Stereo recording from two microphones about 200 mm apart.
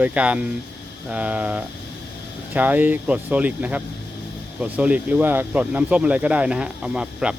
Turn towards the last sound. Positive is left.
turn(degrees=-5)  # may be behind; listen again after turning